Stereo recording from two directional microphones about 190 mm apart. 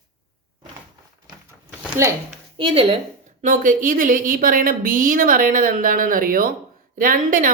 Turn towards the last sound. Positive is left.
turn(degrees=-45)  # may be behind; listen again after turning